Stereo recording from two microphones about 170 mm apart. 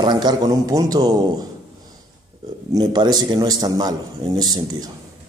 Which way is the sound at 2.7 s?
25° right (ahead or behind).